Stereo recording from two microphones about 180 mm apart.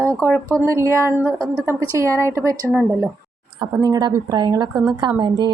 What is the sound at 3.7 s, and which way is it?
A woman's voice, 20° right (ahead or behind).